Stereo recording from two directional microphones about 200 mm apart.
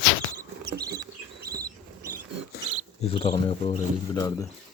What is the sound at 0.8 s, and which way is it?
Rodents, 20° right (ahead or behind).